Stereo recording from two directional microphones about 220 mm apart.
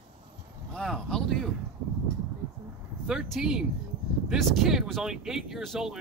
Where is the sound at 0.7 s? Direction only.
Centre (ahead or behind).